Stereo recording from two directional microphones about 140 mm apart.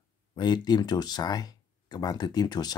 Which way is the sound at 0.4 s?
30° left (ahead or behind).